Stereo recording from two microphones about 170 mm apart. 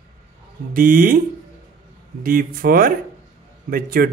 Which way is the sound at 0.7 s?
55° right (ahead or behind).